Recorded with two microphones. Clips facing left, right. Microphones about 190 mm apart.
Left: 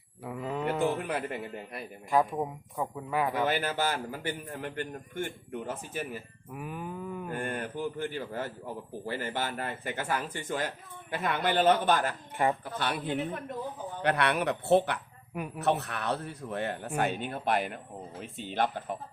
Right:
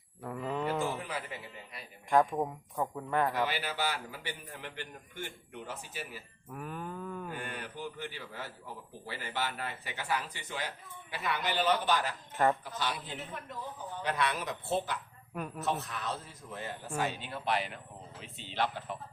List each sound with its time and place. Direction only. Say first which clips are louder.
0.3 s a sound: left 2 dB; 5° left (ahead or behind)
0.8 s speech: left 6 dB; 60° left (ahead or behind)
2.0 s speech: even; 5° left (ahead or behind)
3.4 s speech: left 5 dB; 50° left (ahead or behind)
6.5 s cattle: left 2 dB; 10° left (ahead or behind)
7.3 s speech: left 7 dB; 50° left (ahead or behind)